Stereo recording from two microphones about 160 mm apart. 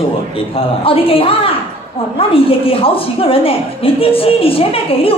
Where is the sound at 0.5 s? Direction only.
35° left (ahead or behind).